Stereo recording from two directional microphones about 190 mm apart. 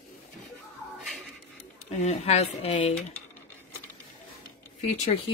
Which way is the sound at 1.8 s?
35° left (ahead or behind).